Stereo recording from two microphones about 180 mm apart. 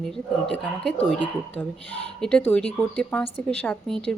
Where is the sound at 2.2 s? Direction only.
10° left (ahead or behind).